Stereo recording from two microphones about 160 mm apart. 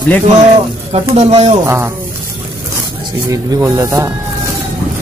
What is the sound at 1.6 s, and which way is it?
Speech, 15° right (ahead or behind).